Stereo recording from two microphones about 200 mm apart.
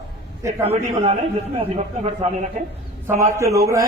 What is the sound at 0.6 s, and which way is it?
A man's voice, 30° right (ahead or behind).